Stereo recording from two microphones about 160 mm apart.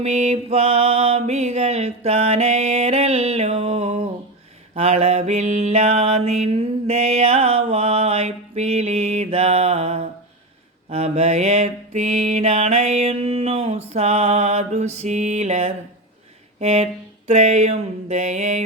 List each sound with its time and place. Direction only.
0.0 s mantra: 45° right (ahead or behind)